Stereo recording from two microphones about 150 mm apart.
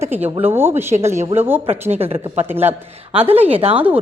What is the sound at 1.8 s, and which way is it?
Speech, 45° right (ahead or behind).